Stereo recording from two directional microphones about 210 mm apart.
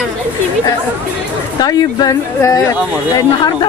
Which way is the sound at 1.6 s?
20° left (ahead or behind).